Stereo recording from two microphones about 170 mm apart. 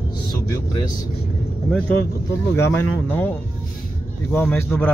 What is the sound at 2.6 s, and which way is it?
Speech, 15° left (ahead or behind).